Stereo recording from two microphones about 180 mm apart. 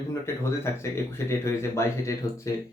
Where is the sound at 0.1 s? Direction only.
15° left (ahead or behind).